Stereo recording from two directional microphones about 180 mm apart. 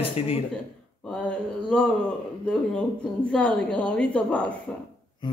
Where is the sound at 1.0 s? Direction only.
5° left (ahead or behind).